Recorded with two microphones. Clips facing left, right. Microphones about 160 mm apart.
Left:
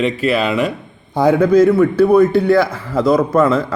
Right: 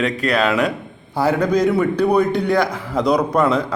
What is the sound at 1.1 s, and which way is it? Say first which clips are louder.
A man's voice: left 6 dB; 10° left (ahead or behind).